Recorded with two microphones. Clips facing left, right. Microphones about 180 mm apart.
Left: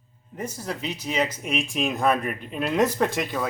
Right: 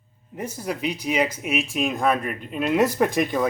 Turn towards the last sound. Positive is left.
turn(degrees=-15)  # may be behind; listen again after turning